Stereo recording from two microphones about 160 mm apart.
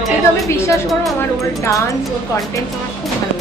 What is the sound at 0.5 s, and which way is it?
Speech, 15° left (ahead or behind).